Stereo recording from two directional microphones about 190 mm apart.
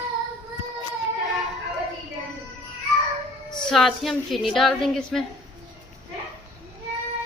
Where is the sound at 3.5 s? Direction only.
Centre (ahead or behind).